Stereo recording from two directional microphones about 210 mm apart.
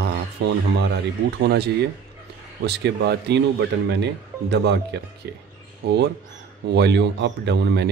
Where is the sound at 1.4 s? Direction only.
50° right (ahead or behind).